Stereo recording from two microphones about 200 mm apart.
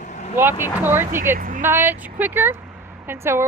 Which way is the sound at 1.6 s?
10° right (ahead or behind).